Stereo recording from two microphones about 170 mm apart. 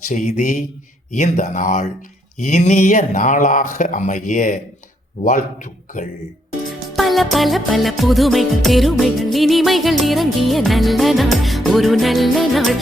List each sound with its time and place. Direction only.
0.1 s speech: 50° left (ahead or behind)
6.7 s music: centre (ahead or behind)